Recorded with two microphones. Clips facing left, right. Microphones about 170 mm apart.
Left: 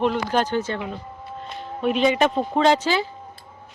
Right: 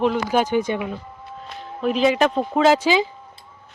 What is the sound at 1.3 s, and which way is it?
Speech, centre (ahead or behind).